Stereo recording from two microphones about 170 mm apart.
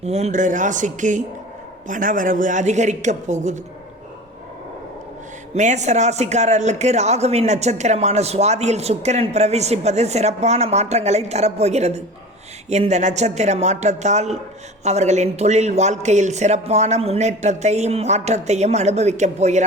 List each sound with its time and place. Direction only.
0.0 s a woman's voice: 40° right (ahead or behind)
5.5 s a man's voice: 45° right (ahead or behind)